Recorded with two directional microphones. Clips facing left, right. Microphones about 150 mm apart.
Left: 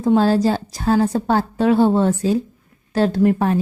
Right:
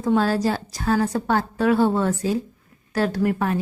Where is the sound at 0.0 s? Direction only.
25° left (ahead or behind).